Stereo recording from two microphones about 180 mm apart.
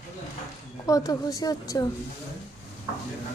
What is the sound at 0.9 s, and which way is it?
A woman's voice, 20° left (ahead or behind).